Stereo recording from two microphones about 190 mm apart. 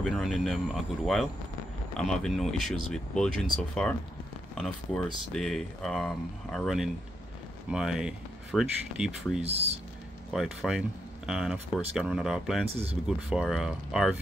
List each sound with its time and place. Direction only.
0.0 s speech: centre (ahead or behind)
9.4 s speech: 35° right (ahead or behind)
10.3 s speech: centre (ahead or behind)